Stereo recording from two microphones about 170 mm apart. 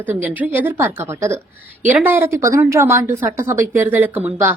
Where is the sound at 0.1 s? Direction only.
10° right (ahead or behind).